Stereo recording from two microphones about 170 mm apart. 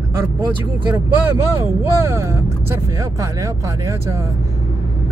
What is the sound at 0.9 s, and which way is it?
Speech, 15° right (ahead or behind).